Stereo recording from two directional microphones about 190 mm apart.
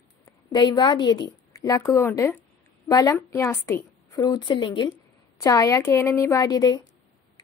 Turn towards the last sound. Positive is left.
turn(degrees=20)  # may be behind; listen again after turning